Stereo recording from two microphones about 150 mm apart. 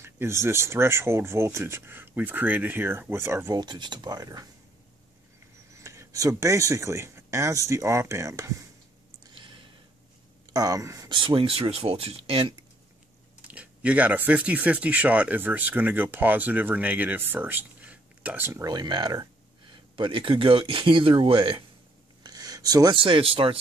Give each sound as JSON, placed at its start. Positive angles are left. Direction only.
{"t": 0.0, "sound": "speech", "side_deg": -15}
{"t": 3.5, "sound": "speech", "side_deg": -30}
{"t": 5.8, "sound": "speech", "side_deg": -20}
{"t": 9.3, "sound": "a sound", "side_deg": -35}
{"t": 10.5, "sound": "speech", "side_deg": -25}
{"t": 11.1, "sound": "speech", "side_deg": -35}
{"t": 13.5, "sound": "speech", "side_deg": -10}
{"t": 18.7, "sound": "speech", "side_deg": -30}
{"t": 22.2, "sound": "a sound", "side_deg": -25}
{"t": 22.9, "sound": "speech", "side_deg": -35}